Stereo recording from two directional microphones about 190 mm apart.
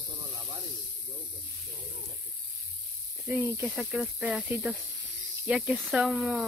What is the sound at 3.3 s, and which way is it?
Speech, 5° right (ahead or behind).